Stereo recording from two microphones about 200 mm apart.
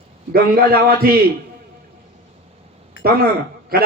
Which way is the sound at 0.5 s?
50° right (ahead or behind).